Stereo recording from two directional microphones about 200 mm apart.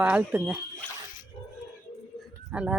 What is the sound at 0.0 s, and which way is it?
Speech, 10° right (ahead or behind).